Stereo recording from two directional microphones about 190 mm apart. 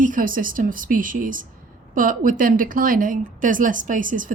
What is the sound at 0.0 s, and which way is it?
Speech, 45° right (ahead or behind).